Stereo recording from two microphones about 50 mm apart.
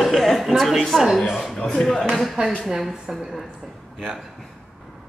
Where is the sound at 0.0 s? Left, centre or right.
Centre.